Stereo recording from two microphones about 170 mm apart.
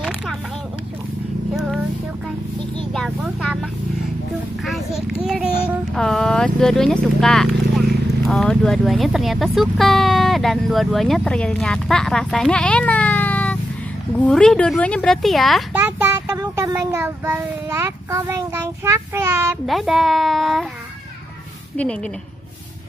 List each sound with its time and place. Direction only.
1.5 s a sound: centre (ahead or behind)
2.9 s speech: 5° left (ahead or behind)
5.2 s child singing: 5° right (ahead or behind)
5.9 s speech: 5° left (ahead or behind)
15.8 s a sound: 10° right (ahead or behind)
16.3 s a child's voice: 20° right (ahead or behind)
19.6 s speech: centre (ahead or behind)